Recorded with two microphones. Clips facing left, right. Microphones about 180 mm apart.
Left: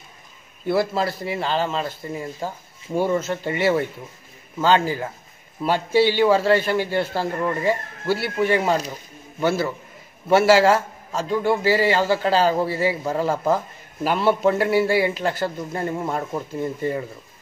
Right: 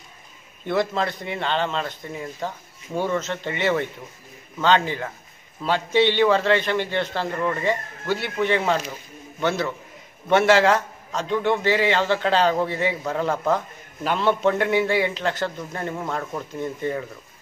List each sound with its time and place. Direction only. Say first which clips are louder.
0.7 s a man's voice: left 2 dB; 5° left (ahead or behind)